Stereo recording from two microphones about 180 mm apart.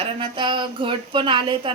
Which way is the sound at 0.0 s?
30° right (ahead or behind).